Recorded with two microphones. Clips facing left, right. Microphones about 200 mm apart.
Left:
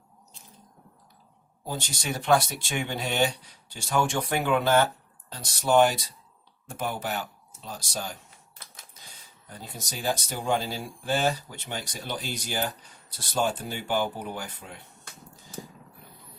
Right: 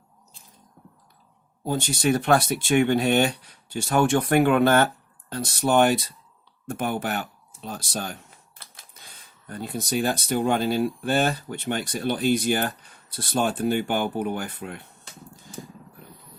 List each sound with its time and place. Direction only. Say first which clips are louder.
1.6 s speech: right 10 dB; 55° right (ahead or behind)